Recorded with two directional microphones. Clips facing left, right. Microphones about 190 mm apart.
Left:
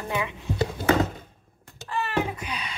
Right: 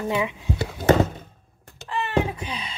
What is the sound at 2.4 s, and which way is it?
Music, 25° right (ahead or behind).